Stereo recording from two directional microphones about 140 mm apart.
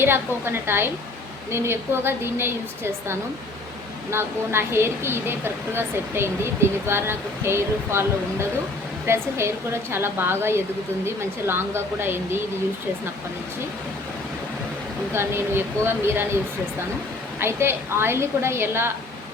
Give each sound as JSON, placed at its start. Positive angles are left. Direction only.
{"t": 0.0, "sound": "a woman's voice", "side_deg": -15}
{"t": 15.1, "sound": "a woman's voice", "side_deg": -15}
{"t": 17.4, "sound": "a woman's voice", "side_deg": -15}